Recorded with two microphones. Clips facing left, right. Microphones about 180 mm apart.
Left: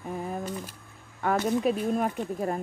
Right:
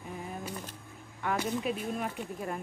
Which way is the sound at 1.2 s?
45° left (ahead or behind).